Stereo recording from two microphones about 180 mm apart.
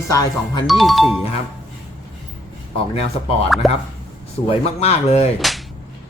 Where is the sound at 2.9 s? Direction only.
35° left (ahead or behind).